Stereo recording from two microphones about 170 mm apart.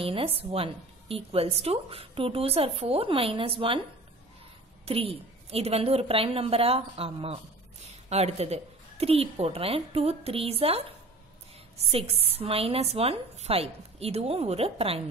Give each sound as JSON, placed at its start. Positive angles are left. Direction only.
{"t": 0.0, "sound": "a woman's voice", "side_deg": -35}
{"t": 4.8, "sound": "a woman's voice", "side_deg": -35}
{"t": 12.4, "sound": "a woman's voice", "side_deg": -35}